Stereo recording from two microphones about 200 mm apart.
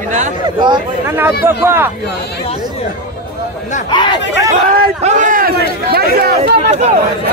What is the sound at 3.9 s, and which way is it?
Chatter, 20° left (ahead or behind).